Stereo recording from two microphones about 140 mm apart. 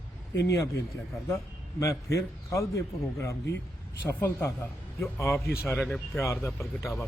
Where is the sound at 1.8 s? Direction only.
20° left (ahead or behind).